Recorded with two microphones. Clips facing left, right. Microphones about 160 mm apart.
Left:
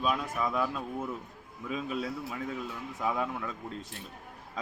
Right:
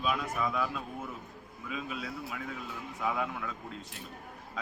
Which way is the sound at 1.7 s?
30° left (ahead or behind).